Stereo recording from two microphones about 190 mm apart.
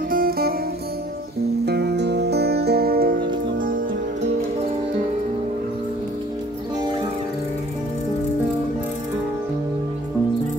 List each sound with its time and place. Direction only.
0.1 s music: 50° right (ahead or behind)
1.7 s music: 60° right (ahead or behind)